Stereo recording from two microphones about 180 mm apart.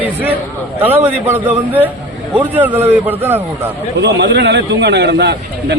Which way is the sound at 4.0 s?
70° right (ahead or behind).